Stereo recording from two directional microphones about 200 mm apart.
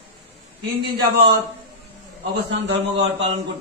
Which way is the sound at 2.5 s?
60° right (ahead or behind).